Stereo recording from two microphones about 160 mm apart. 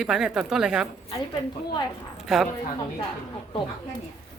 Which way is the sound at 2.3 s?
Centre (ahead or behind).